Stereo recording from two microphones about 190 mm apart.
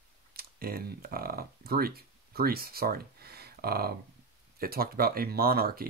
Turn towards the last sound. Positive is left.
turn(degrees=-50)  # may be behind; listen again after turning